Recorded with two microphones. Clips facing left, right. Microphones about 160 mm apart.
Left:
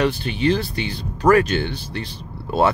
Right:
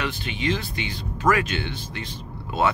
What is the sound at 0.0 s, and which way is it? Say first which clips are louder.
Speech: left 8 dB; 35° left (ahead or behind).